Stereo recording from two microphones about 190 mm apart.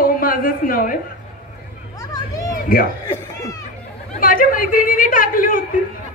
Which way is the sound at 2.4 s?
50° left (ahead or behind).